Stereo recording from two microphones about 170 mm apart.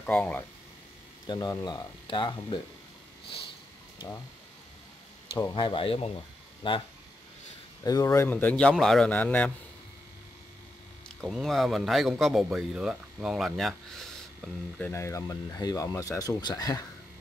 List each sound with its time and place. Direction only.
0.0 s speech: 10° left (ahead or behind)
1.2 s speech: 25° left (ahead or behind)
5.4 s speech: 30° left (ahead or behind)
7.8 s speech: 20° left (ahead or behind)
11.1 s speech: centre (ahead or behind)
14.9 s speech: 15° left (ahead or behind)